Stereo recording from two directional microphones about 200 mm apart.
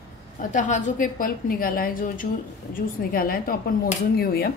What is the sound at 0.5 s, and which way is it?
Speech, 40° left (ahead or behind).